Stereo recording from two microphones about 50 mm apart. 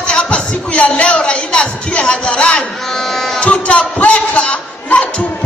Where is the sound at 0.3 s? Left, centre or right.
Left.